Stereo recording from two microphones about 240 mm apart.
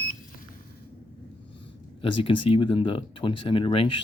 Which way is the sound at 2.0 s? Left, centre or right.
Left.